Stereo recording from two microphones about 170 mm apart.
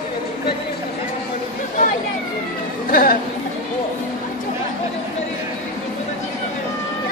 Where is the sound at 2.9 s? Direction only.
55° left (ahead or behind).